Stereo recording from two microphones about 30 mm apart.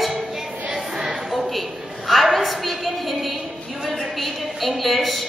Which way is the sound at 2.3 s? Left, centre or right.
Centre.